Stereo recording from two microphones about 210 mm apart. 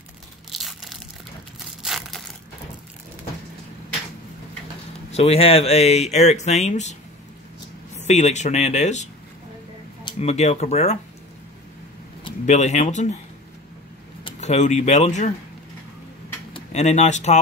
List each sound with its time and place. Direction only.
0.5 s crushing: centre (ahead or behind)
1.8 s crumpling: centre (ahead or behind)
5.1 s speech: 30° left (ahead or behind)
10.1 s speech: 30° left (ahead or behind)
12.3 s speech: 35° left (ahead or behind)
14.2 s speech: 35° left (ahead or behind)
16.5 s speech: 30° left (ahead or behind)